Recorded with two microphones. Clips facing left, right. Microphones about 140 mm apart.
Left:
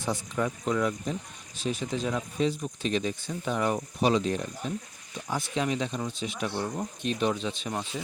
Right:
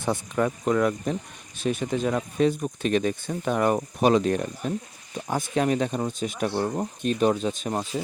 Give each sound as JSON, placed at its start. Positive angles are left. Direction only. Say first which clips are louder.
{"t": 0.0, "sound": "speech", "louder": "right 5 dB", "side_deg": -60}